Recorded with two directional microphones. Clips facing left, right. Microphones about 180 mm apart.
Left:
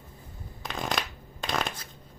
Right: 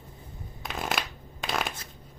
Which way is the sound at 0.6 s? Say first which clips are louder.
Even; 5° right (ahead or behind).